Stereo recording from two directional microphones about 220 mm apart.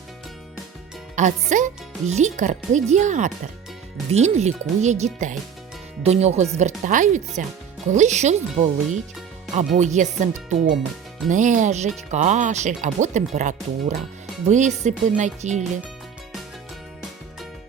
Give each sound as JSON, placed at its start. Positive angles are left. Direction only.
{"t": 1.1, "sound": "speech", "side_deg": -35}